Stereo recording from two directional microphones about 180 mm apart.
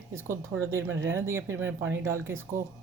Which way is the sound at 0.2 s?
15° right (ahead or behind).